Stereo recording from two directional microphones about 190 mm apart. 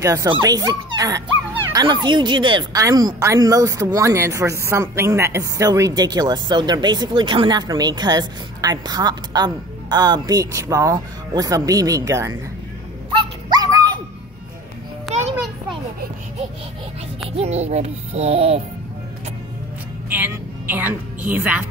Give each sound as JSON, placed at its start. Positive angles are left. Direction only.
{"t": 0.0, "sound": "a woman's voice", "side_deg": -15}
{"t": 13.5, "sound": "dog", "side_deg": -20}
{"t": 15.1, "sound": "children playing", "side_deg": -40}
{"t": 17.4, "sound": "music", "side_deg": -35}
{"t": 20.1, "sound": "a woman's voice", "side_deg": -10}